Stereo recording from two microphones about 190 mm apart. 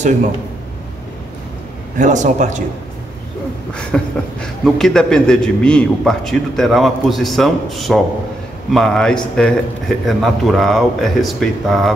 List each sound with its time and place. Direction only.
2.0 s a man's voice: 40° right (ahead or behind)
3.7 s a man's voice: 5° left (ahead or behind)